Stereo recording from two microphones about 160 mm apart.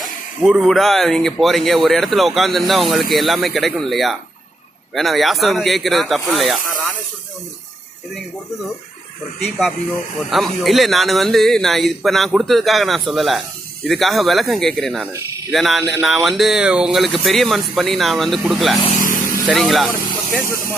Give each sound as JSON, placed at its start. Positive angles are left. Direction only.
{"t": 0.0, "sound": "speech", "side_deg": -5}
{"t": 10.3, "sound": "speech", "side_deg": 0}
{"t": 18.9, "sound": "vehicle", "side_deg": 55}
{"t": 19.5, "sound": "speech", "side_deg": 0}
{"t": 19.9, "sound": "speech", "side_deg": 15}